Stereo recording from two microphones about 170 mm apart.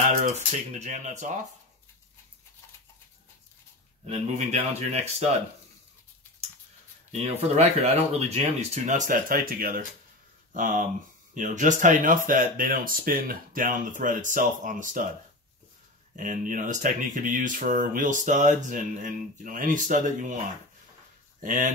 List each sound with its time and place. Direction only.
0.7 s speech: 45° right (ahead or behind)
4.0 s speech: 40° right (ahead or behind)
7.1 s speech: 40° right (ahead or behind)
16.2 s speech: 50° right (ahead or behind)
21.4 s speech: 50° right (ahead or behind)